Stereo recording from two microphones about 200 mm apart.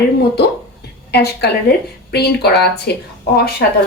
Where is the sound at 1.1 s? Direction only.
55° left (ahead or behind).